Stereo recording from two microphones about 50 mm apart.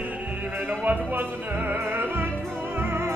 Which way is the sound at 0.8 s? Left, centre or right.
Right.